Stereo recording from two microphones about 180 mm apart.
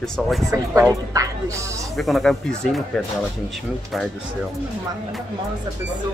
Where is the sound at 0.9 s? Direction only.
15° right (ahead or behind).